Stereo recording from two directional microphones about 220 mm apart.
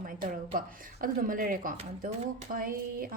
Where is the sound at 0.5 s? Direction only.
40° right (ahead or behind).